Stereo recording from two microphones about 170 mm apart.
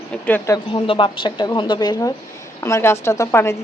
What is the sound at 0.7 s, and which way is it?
A woman's voice, 30° left (ahead or behind).